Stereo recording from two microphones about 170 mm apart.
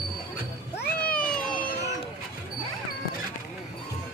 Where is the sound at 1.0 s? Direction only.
5° left (ahead or behind).